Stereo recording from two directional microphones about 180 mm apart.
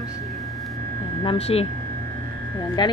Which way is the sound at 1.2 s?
35° left (ahead or behind).